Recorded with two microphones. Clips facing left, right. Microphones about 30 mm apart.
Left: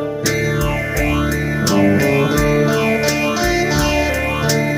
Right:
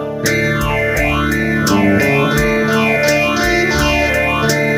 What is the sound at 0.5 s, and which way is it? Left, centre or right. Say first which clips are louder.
Music: right 4 dB; centre.